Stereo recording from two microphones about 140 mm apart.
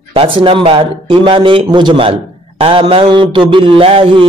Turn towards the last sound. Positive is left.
turn(degrees=-40)  # may be behind; listen again after turning